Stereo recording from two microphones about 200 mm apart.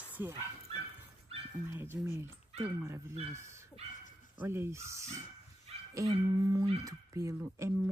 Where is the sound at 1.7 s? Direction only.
10° right (ahead or behind).